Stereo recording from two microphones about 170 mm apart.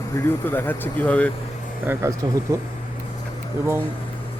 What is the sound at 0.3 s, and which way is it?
Speech, 10° left (ahead or behind).